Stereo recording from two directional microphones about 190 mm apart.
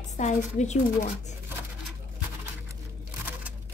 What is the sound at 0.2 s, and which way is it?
Speech, 35° left (ahead or behind).